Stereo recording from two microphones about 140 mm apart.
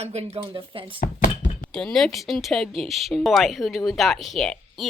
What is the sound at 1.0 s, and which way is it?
Thunk, 75° left (ahead or behind).